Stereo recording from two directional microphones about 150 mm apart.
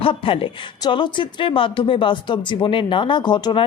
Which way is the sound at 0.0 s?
35° left (ahead or behind).